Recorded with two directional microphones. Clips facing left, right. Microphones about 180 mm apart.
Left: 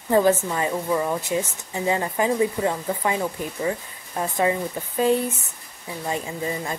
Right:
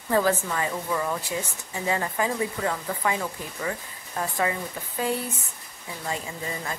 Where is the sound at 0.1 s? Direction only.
20° left (ahead or behind).